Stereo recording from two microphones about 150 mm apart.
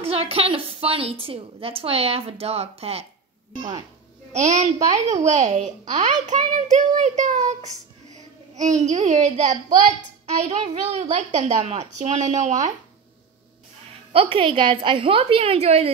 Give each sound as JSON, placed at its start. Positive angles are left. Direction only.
{"t": 0.0, "sound": "a woman's voice", "side_deg": -40}
{"t": 4.3, "sound": "a child's voice", "side_deg": -50}
{"t": 14.1, "sound": "a woman's voice", "side_deg": -40}